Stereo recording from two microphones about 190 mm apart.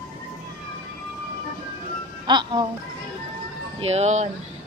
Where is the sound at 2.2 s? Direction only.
25° right (ahead or behind).